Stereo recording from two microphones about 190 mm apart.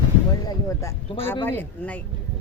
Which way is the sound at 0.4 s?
15° left (ahead or behind).